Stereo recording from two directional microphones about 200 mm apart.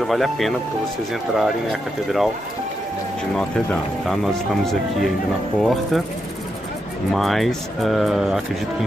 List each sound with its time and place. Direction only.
0.0 s speech: centre (ahead or behind)
3.3 s speech: centre (ahead or behind)
5.6 s speech: centre (ahead or behind)
7.1 s speech: centre (ahead or behind)